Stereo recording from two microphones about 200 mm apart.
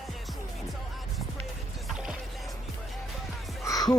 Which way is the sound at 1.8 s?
5° right (ahead or behind).